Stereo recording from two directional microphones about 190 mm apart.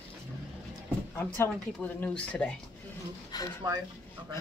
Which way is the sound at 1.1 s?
10° left (ahead or behind).